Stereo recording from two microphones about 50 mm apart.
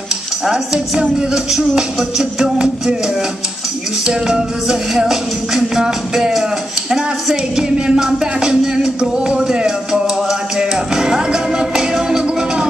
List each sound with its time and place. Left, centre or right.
1.3 s music: centre
4.0 s music: centre